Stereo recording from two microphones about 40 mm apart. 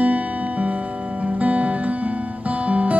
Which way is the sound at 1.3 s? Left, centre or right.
Right.